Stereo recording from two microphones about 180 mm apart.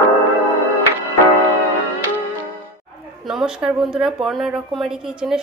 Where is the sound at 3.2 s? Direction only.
Centre (ahead or behind).